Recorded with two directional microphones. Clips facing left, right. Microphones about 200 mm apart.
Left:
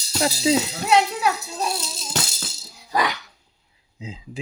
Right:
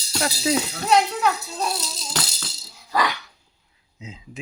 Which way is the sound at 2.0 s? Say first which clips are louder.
Left 3 dB; 25° left (ahead or behind).